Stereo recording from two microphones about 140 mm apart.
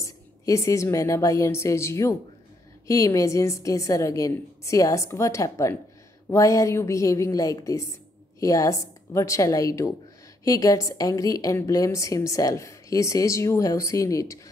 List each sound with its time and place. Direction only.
0.0 s a woman's voice: 20° left (ahead or behind)